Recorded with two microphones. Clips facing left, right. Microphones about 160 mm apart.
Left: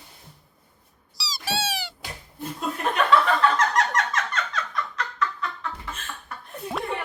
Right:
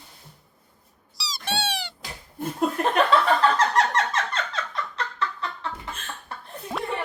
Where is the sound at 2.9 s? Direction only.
30° right (ahead or behind).